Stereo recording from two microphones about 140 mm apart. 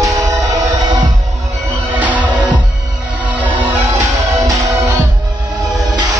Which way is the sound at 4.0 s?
20° right (ahead or behind).